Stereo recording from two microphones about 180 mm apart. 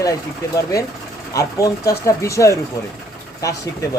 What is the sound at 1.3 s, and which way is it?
Speech, 20° left (ahead or behind).